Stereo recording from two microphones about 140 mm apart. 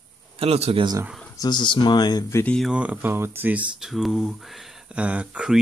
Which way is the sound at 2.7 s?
10° right (ahead or behind).